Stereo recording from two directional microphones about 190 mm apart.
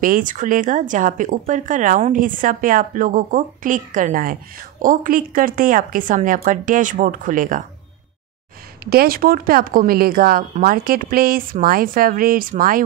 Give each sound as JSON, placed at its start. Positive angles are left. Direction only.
{"t": 0.0, "sound": "speech", "side_deg": -45}
{"t": 8.9, "sound": "speech", "side_deg": -50}